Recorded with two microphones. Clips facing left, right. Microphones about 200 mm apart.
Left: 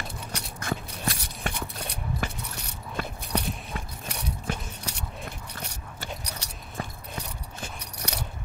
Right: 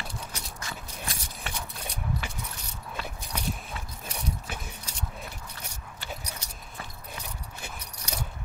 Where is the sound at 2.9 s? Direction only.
50° left (ahead or behind).